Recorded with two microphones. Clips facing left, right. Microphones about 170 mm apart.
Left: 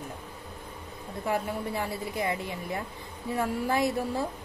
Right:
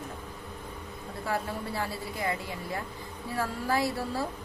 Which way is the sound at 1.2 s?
20° left (ahead or behind).